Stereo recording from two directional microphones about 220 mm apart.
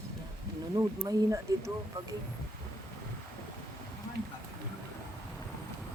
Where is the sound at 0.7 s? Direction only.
15° right (ahead or behind).